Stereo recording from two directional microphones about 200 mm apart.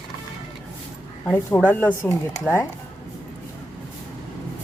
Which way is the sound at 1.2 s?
10° left (ahead or behind).